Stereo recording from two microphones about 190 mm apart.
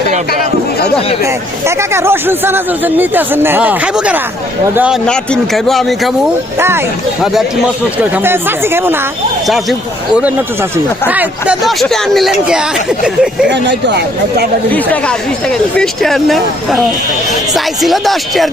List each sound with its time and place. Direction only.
1.2 s speech: 15° right (ahead or behind)
5.0 s speech: 5° left (ahead or behind)
6.6 s speech: 10° right (ahead or behind)
10.2 s speech: 10° right (ahead or behind)
13.5 s speech: 65° right (ahead or behind)
14.7 s speech: 5° left (ahead or behind)